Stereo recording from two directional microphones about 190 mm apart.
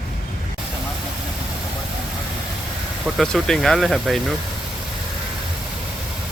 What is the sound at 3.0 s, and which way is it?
Speech, centre (ahead or behind).